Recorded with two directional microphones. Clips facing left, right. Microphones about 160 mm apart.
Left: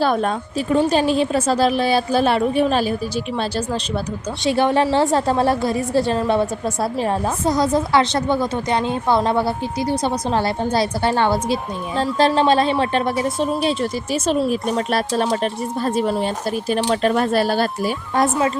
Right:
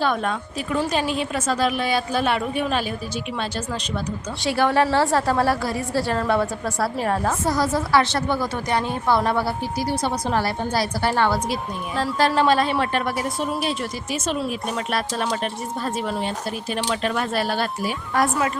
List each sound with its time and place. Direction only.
0.0 s a woman's voice: 35° left (ahead or behind)
4.4 s a woman's voice: 20° left (ahead or behind); by 17.9 s 40° left (ahead or behind)
18.1 s a woman's voice: 25° left (ahead or behind)